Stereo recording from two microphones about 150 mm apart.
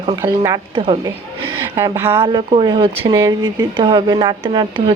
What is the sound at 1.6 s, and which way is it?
Speech, 15° right (ahead or behind).